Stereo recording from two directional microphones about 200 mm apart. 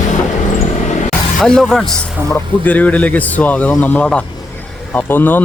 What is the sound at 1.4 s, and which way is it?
Speech, 5° left (ahead or behind).